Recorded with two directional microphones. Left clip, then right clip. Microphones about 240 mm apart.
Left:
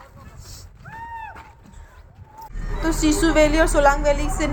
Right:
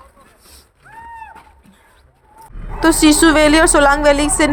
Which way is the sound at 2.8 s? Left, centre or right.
Right.